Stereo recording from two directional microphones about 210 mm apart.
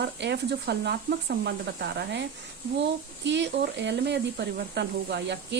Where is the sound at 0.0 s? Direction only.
55° right (ahead or behind).